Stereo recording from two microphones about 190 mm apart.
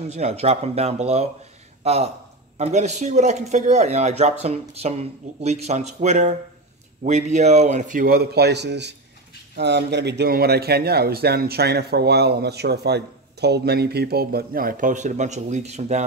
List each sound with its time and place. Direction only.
0.1 s a man's voice: 35° right (ahead or behind)